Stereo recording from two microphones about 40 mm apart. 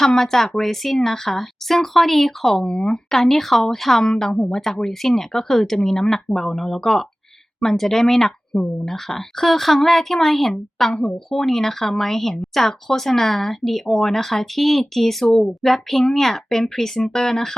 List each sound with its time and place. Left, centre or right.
0.0 s speech: centre
2.6 s speech: centre
3.1 s speech: centre